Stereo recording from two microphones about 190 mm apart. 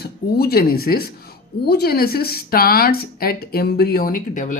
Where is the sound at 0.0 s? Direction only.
55° left (ahead or behind).